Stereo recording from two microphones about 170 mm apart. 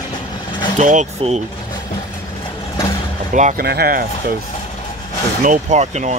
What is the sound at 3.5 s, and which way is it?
Speech, 65° right (ahead or behind).